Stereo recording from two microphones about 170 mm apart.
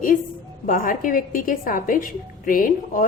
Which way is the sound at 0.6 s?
55° left (ahead or behind).